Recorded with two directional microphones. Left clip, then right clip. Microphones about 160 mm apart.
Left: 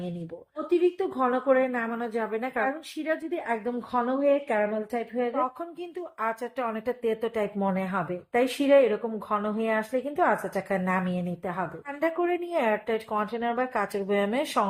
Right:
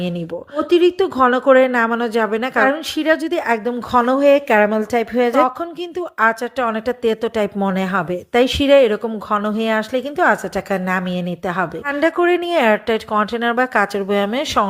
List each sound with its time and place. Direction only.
0.5 s speech: 45° right (ahead or behind)
6.0 s a woman's voice: 35° right (ahead or behind)
11.4 s a woman's voice: 35° right (ahead or behind)